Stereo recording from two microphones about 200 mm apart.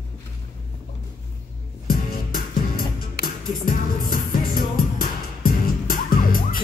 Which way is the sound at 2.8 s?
45° left (ahead or behind).